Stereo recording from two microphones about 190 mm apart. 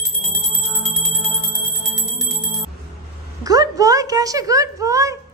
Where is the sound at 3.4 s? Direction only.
20° right (ahead or behind).